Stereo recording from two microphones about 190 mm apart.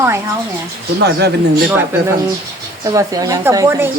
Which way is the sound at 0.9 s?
60° right (ahead or behind).